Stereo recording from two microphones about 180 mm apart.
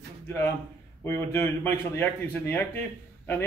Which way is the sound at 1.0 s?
15° left (ahead or behind).